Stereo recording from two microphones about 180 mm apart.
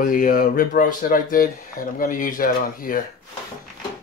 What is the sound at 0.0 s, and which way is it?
Speech, 50° left (ahead or behind).